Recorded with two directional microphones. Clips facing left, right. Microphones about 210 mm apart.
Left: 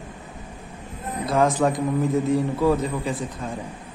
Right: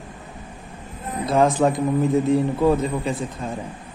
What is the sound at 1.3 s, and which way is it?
A man's voice, 25° right (ahead or behind).